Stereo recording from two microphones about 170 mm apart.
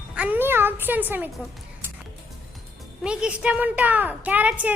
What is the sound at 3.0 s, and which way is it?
A woman's voice, 5° right (ahead or behind).